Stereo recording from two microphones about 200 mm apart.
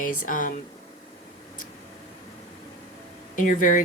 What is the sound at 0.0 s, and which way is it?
Speech, 45° left (ahead or behind).